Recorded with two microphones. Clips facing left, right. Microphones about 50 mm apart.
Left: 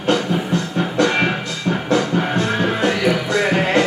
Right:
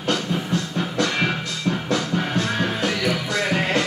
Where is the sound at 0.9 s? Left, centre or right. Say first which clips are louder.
Left 6 dB; left.